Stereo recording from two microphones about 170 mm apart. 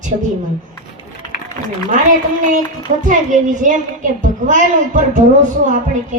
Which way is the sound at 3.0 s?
50° right (ahead or behind).